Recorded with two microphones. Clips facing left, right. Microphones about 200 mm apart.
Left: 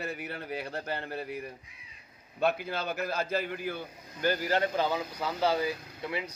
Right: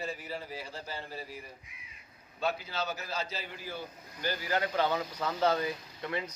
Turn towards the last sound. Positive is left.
turn(degrees=10)  # may be behind; listen again after turning